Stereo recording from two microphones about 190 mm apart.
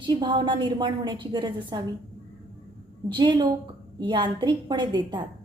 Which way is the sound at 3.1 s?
25° right (ahead or behind).